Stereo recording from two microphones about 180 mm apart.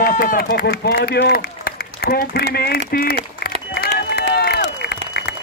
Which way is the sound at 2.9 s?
55° left (ahead or behind).